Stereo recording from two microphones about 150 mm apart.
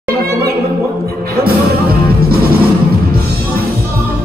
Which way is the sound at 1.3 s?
90° right.